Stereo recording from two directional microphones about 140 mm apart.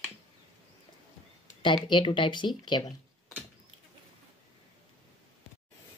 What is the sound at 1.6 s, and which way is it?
Speech, 35° left (ahead or behind).